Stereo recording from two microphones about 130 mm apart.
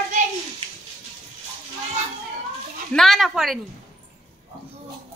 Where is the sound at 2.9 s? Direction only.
5° left (ahead or behind).